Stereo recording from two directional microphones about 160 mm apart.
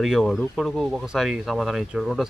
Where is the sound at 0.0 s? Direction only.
Centre (ahead or behind).